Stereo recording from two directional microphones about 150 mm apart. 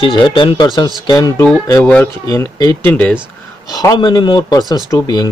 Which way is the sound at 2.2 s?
20° left (ahead or behind).